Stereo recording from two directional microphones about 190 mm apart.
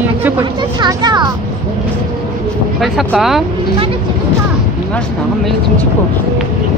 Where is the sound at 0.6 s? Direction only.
20° right (ahead or behind).